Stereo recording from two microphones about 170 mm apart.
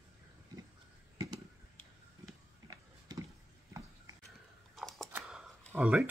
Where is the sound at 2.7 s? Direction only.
20° right (ahead or behind).